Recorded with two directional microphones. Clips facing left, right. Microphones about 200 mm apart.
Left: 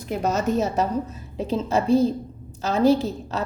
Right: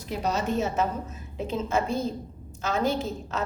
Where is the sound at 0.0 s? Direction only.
50° left (ahead or behind).